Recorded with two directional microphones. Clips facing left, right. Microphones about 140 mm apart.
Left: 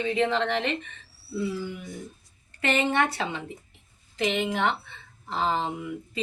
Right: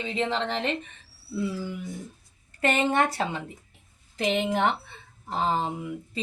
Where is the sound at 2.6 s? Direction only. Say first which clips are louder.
Right 1 dB; 40° right (ahead or behind).